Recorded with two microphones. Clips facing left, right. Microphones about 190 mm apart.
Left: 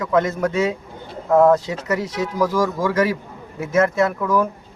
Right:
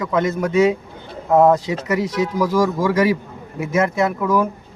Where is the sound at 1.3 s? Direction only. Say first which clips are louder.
Even; 15° right (ahead or behind).